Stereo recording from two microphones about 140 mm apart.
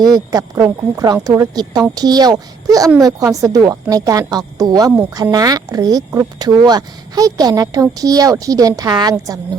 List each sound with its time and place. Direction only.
0.0 s a woman's voice: 25° right (ahead or behind)